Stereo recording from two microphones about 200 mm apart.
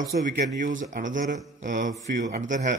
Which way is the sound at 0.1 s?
55° right (ahead or behind).